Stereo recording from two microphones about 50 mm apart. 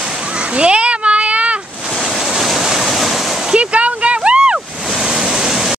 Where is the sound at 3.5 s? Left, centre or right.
Right.